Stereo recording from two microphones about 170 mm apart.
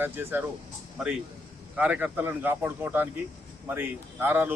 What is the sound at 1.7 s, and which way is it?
Speech, 10° right (ahead or behind).